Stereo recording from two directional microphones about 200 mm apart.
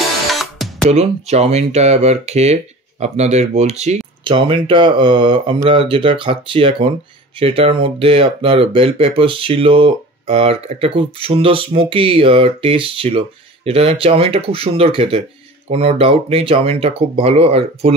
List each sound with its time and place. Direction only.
0.3 s music: centre (ahead or behind)
0.8 s speech: 35° right (ahead or behind)